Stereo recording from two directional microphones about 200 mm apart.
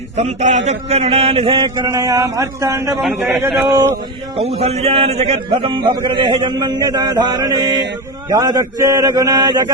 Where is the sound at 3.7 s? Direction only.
15° right (ahead or behind).